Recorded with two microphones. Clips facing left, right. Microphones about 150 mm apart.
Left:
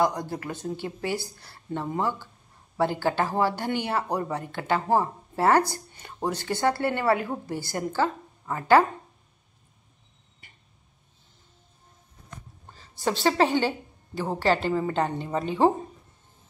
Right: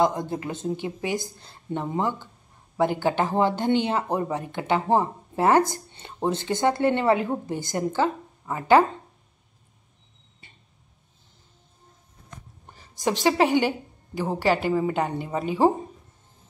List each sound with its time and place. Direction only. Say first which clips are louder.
0.0 s speech: right 2 dB; 20° right (ahead or behind)
10.4 s a sound: right 2 dB; 25° right (ahead or behind)
12.6 s a woman's voice: right 2 dB; 15° right (ahead or behind)